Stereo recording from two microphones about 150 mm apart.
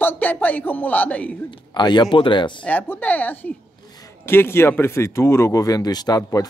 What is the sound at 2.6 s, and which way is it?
Speech, 10° left (ahead or behind).